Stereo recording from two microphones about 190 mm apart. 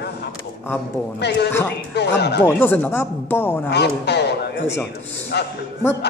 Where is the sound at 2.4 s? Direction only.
10° left (ahead or behind).